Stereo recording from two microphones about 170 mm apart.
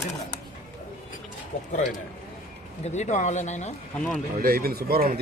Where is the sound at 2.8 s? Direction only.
45° left (ahead or behind).